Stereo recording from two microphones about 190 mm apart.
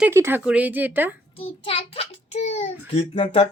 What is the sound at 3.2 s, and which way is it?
Speech, 30° left (ahead or behind).